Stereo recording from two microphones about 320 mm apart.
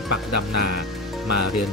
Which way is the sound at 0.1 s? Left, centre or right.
Left.